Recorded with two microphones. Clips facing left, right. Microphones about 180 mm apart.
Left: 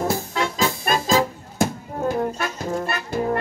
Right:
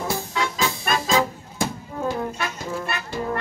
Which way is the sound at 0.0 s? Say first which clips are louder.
Left 3 dB; 45° left (ahead or behind).